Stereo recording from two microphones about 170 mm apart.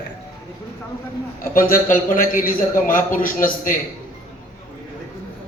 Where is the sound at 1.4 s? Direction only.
55° left (ahead or behind).